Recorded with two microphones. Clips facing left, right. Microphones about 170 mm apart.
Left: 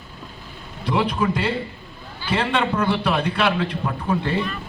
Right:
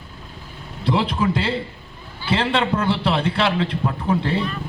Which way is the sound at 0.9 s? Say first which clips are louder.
Right 1 dB; 25° right (ahead or behind).